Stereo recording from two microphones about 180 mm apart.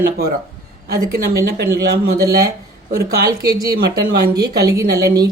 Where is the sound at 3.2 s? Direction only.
20° right (ahead or behind).